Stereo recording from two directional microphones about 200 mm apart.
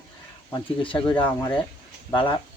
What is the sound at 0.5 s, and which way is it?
Speech, 25° left (ahead or behind).